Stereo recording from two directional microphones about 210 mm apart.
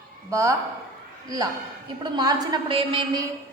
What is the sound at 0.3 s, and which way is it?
Speech, 15° right (ahead or behind).